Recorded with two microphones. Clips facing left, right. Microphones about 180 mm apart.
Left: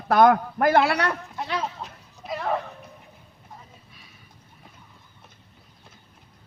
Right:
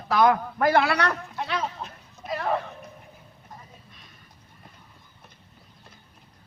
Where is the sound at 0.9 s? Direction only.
10° left (ahead or behind).